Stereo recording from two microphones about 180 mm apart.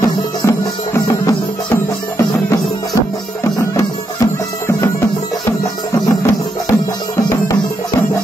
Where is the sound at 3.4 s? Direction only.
15° left (ahead or behind).